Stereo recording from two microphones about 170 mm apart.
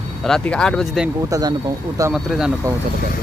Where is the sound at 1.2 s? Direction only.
20° right (ahead or behind).